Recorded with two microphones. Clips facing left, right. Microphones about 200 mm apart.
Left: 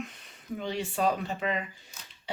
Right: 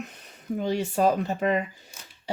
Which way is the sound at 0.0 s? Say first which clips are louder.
Right 1 dB; 40° right (ahead or behind).